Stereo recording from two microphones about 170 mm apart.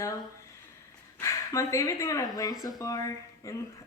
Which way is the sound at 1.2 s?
15° left (ahead or behind).